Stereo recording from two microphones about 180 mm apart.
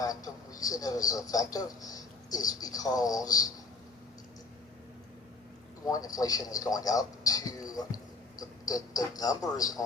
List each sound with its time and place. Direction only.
0.0 s speech: 20° left (ahead or behind)
5.8 s a man's voice: 20° left (ahead or behind)